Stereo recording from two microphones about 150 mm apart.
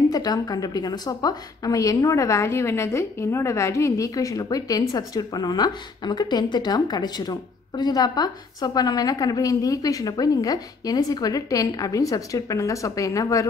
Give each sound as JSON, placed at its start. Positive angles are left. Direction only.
{"t": 0.1, "sound": "a woman's voice", "side_deg": 25}